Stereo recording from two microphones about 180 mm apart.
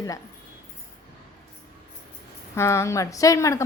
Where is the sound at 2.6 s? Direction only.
15° left (ahead or behind).